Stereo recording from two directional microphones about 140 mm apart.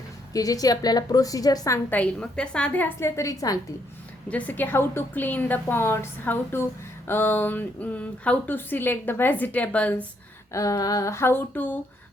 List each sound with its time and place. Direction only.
0.3 s a woman's voice: 25° left (ahead or behind)
2.0 s speech: 5° left (ahead or behind); by 3.6 s 25° left (ahead or behind)
4.3 s speech: 10° left (ahead or behind)
10.5 s a woman's voice: 25° left (ahead or behind)